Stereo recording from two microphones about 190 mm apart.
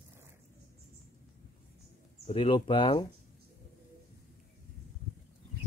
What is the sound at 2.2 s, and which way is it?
Speech, 30° left (ahead or behind).